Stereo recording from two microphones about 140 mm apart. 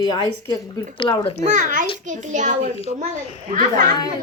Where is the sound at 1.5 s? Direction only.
65° right (ahead or behind).